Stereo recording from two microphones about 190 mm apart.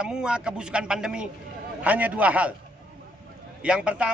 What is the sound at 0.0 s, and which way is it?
A man's voice, 5° right (ahead or behind).